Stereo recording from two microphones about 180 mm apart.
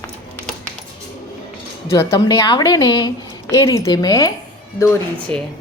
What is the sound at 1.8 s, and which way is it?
A woman's voice, 15° left (ahead or behind).